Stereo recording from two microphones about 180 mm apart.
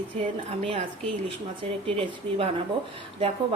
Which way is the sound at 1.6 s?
30° right (ahead or behind).